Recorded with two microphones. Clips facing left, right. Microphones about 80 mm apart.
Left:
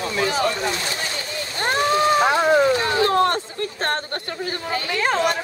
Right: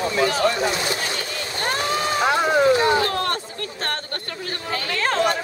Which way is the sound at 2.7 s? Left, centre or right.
Centre.